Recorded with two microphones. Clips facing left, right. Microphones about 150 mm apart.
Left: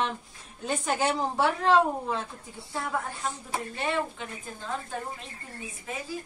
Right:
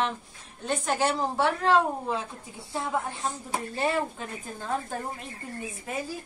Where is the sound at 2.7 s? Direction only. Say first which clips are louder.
Right 2 dB; 20° right (ahead or behind).